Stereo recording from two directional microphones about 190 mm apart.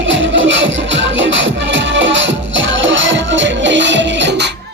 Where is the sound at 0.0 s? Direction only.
80° right; by 4.5 s 65° right (ahead or behind).